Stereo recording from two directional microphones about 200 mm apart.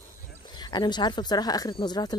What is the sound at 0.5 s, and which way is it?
Speech, 20° left (ahead or behind).